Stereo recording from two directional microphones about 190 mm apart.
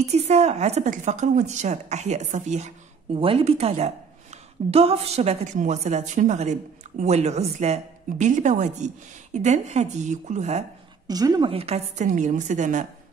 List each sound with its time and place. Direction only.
0.1 s a woman's voice: 35° right (ahead or behind)
11.1 s a woman's voice: 20° right (ahead or behind); by 12.8 s 40° right (ahead or behind)